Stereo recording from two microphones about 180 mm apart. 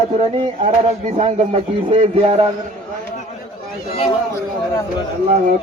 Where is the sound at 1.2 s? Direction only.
35° right (ahead or behind).